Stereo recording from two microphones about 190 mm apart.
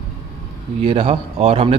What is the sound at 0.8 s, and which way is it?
Speech, 30° right (ahead or behind).